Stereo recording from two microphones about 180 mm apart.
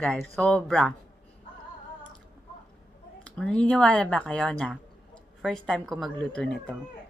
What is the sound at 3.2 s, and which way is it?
Speech, 5° left (ahead or behind).